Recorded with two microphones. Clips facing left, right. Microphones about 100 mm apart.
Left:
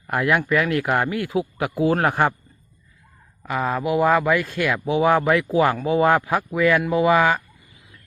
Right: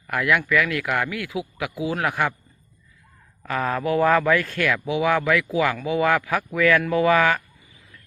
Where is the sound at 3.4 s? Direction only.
15° left (ahead or behind).